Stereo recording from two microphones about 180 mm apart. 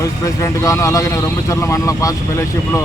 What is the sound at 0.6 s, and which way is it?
Speech, 20° left (ahead or behind).